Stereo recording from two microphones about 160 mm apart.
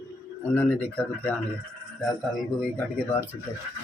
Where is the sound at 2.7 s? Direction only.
10° left (ahead or behind).